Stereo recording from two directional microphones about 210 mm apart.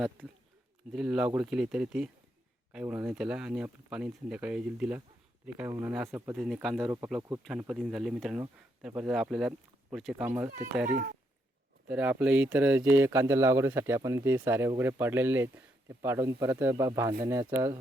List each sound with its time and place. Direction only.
0.9 s speech: 5° right (ahead or behind)
11.9 s speech: 5° right (ahead or behind)